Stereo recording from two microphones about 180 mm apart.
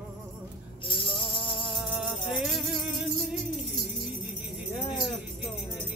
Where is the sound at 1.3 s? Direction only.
Centre (ahead or behind).